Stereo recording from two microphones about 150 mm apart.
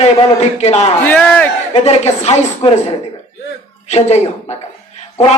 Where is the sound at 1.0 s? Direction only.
10° left (ahead or behind).